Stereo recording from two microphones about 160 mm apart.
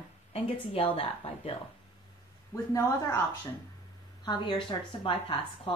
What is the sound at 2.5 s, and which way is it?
Speech, 15° left (ahead or behind).